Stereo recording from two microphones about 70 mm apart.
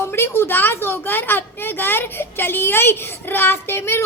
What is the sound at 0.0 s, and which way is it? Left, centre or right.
A woman's voice, left.